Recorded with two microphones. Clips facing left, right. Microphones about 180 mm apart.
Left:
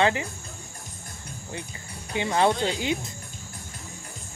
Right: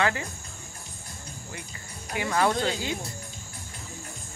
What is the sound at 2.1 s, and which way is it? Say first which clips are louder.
Speech: left 2 dB; 25° left (ahead or behind).